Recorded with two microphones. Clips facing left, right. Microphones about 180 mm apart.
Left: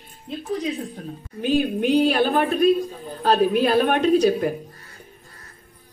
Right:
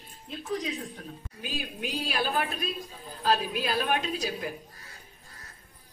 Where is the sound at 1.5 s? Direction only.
65° left (ahead or behind).